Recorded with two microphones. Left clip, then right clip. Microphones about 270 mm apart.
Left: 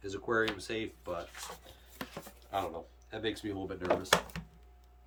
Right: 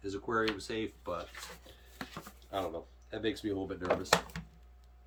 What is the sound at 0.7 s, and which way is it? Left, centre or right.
Speech, centre.